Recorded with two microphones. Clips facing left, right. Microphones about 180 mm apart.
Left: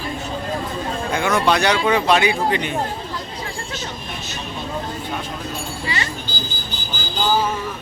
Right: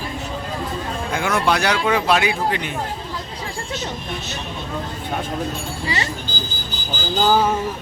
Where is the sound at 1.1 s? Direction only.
5° right (ahead or behind).